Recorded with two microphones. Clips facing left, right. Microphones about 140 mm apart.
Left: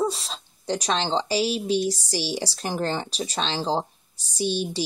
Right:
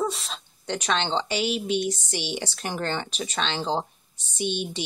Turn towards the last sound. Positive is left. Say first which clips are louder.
# left 3 dB
turn(degrees=35)  # may be behind; listen again after turning